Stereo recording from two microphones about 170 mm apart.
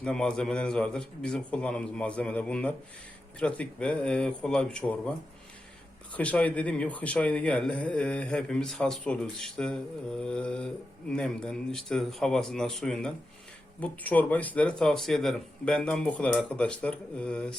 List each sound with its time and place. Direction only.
0.0 s a man's voice: 5° left (ahead or behind)
6.1 s a man's voice: 10° left (ahead or behind)